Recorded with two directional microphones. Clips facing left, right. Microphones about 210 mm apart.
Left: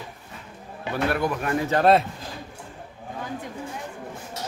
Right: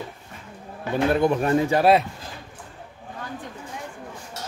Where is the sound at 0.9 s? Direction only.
25° right (ahead or behind).